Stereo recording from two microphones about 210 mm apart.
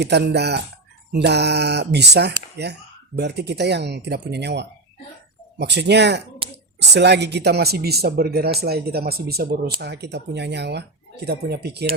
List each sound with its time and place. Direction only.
0.0 s speech: 55° right (ahead or behind)